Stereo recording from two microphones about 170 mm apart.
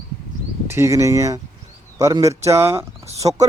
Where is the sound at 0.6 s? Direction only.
15° right (ahead or behind).